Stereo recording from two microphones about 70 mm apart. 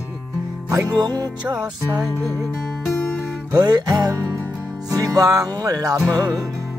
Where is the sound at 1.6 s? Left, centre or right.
Right.